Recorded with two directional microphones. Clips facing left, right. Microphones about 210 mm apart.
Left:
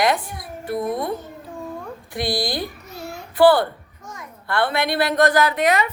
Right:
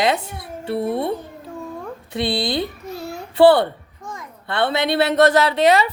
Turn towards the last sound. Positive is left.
turn(degrees=-30)  # may be behind; listen again after turning